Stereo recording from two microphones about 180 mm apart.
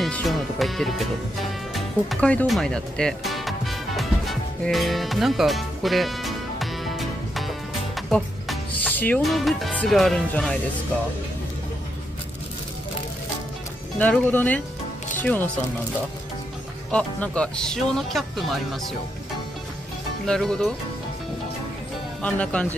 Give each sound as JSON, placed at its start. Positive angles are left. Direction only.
{"t": 0.0, "sound": "speech", "side_deg": 0}
{"t": 1.7, "sound": "music", "side_deg": 5}
{"t": 13.9, "sound": "speech", "side_deg": 10}
{"t": 16.9, "sound": "speech", "side_deg": 5}
{"t": 20.2, "sound": "speech", "side_deg": 5}
{"t": 22.2, "sound": "speech", "side_deg": 5}